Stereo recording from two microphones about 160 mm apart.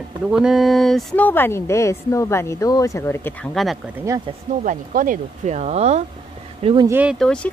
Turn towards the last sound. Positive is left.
turn(degrees=5)  # may be behind; listen again after turning